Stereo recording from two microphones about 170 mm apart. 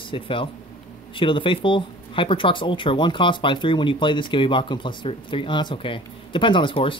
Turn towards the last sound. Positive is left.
turn(degrees=30)  # may be behind; listen again after turning